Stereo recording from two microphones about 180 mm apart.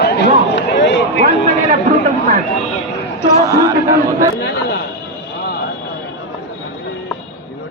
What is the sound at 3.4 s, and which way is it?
Speech, 15° right (ahead or behind).